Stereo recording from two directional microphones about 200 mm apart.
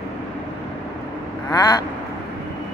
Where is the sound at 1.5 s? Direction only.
20° left (ahead or behind).